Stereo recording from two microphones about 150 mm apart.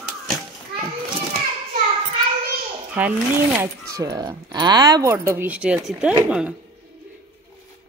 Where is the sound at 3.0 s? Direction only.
10° right (ahead or behind).